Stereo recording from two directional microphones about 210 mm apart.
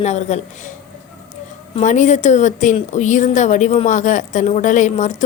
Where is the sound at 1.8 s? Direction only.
35° left (ahead or behind).